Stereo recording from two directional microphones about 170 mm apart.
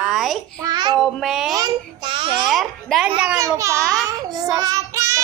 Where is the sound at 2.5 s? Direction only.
Centre (ahead or behind).